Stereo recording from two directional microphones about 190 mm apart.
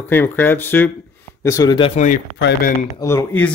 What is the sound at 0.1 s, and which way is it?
Speech, 10° left (ahead or behind).